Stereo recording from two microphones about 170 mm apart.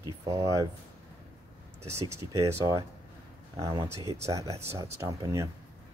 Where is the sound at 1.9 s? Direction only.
15° right (ahead or behind).